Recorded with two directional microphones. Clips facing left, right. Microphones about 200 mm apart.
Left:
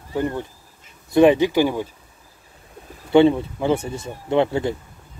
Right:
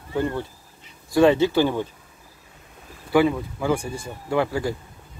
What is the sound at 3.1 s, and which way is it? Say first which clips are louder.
Speech: left 5 dB; 25° left (ahead or behind).